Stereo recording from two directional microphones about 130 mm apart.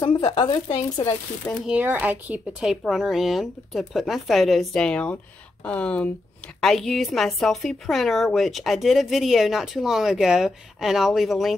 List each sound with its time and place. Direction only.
0.0 s speech: 35° left (ahead or behind)
1.7 s a woman's voice: 15° right (ahead or behind)